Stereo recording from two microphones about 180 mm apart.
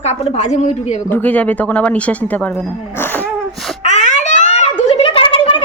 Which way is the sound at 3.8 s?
40° left (ahead or behind).